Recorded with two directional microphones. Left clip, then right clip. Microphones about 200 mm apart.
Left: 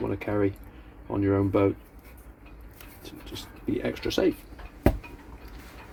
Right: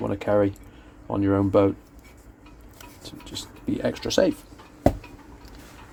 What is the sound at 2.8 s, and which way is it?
Speech, 45° right (ahead or behind).